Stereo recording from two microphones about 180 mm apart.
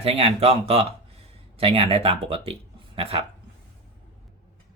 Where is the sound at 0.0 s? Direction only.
30° right (ahead or behind).